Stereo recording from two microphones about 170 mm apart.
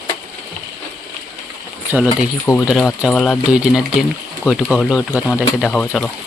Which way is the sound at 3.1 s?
10° left (ahead or behind).